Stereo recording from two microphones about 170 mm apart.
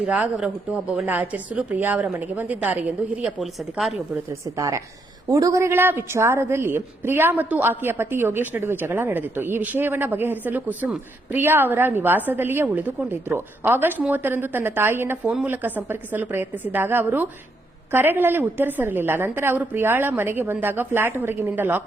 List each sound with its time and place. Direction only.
0.0 s a woman's voice: 5° right (ahead or behind)
4.3 s a woman's voice: 20° right (ahead or behind)